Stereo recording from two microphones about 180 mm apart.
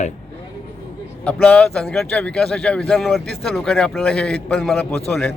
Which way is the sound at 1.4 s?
5° left (ahead or behind).